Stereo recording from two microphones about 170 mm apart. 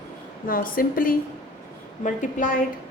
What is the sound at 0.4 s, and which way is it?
A woman's voice, 55° left (ahead or behind).